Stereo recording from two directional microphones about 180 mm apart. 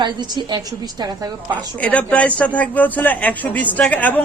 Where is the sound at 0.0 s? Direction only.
25° right (ahead or behind).